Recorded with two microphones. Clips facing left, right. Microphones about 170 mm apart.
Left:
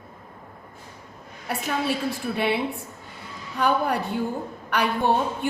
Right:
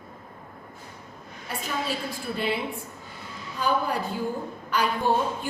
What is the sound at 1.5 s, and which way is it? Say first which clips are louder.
Speech: left 5 dB; 65° left (ahead or behind).